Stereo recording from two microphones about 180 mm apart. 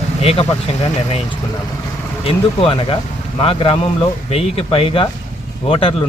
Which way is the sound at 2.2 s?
30° left (ahead or behind).